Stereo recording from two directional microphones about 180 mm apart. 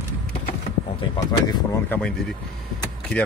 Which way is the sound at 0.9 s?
20° left (ahead or behind).